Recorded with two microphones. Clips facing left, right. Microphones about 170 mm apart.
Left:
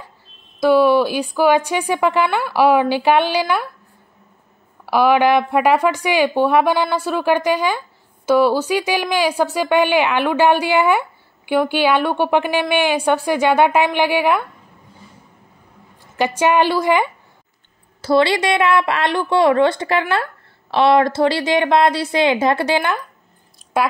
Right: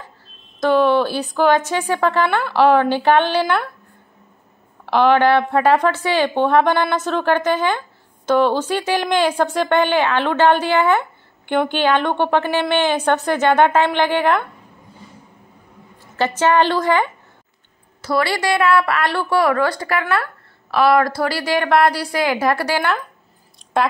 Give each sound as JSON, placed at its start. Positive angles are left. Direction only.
{"t": 0.6, "sound": "a woman's voice", "side_deg": 10}
{"t": 4.8, "sound": "a woman's voice", "side_deg": 10}
{"t": 16.2, "sound": "a woman's voice", "side_deg": 15}
{"t": 18.0, "sound": "a woman's voice", "side_deg": 25}